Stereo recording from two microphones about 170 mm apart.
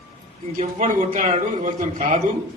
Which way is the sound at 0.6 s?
45° right (ahead or behind).